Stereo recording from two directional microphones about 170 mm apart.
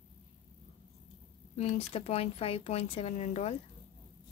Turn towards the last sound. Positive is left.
turn(degrees=40)  # may be behind; listen again after turning